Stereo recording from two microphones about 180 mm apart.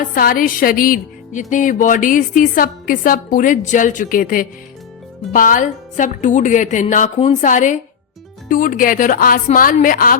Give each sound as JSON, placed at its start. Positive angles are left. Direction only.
{"t": 0.0, "sound": "music", "side_deg": 50}